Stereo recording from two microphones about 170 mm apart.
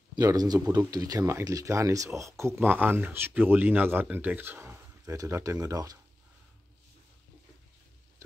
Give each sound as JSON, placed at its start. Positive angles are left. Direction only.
{"t": 0.1, "sound": "speech", "side_deg": -20}